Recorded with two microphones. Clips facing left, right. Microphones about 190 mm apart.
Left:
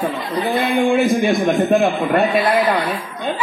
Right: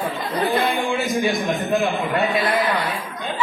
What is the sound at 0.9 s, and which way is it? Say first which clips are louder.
A man's voice: left 6 dB; 55° left (ahead or behind).